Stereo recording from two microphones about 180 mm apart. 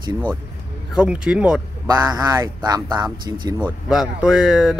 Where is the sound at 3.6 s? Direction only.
5° right (ahead or behind).